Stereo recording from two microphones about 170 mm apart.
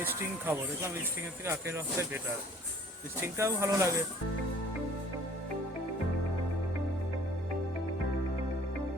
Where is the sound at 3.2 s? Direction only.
15° right (ahead or behind).